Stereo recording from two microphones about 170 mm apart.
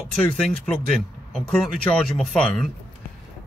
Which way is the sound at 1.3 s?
5° left (ahead or behind).